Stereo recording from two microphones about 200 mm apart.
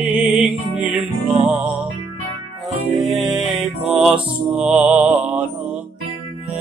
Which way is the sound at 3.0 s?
Centre (ahead or behind).